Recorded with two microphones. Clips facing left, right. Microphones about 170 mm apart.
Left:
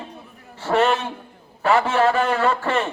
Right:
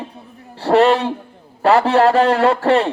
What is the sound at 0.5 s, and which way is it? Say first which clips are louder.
A man's voice: right 6 dB; 35° right (ahead or behind).